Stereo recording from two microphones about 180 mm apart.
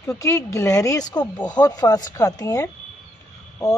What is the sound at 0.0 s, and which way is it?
Speech, 15° left (ahead or behind).